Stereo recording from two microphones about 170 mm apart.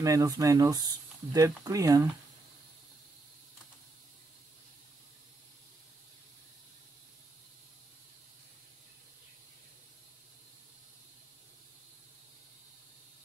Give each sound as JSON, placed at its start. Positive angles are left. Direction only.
{"t": 0.0, "sound": "speech", "side_deg": -20}